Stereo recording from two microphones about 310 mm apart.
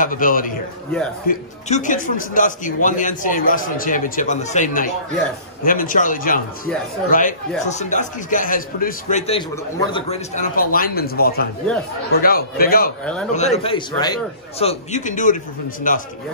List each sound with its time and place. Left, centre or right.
0.0 s a man's voice: left
13.0 s a man's voice: centre
13.3 s a man's voice: centre